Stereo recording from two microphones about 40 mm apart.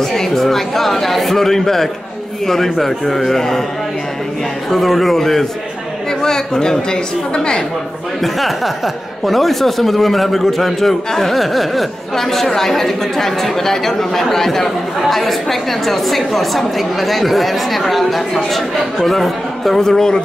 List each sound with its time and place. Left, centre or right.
0.0 s speech: centre
4.6 s a woman's voice: centre
8.2 s a woman's voice: centre
19.8 s speech: centre